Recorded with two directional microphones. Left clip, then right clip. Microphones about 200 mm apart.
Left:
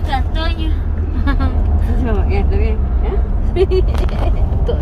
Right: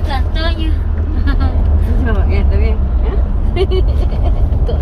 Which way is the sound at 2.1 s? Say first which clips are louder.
Left 1 dB; 45° left (ahead or behind).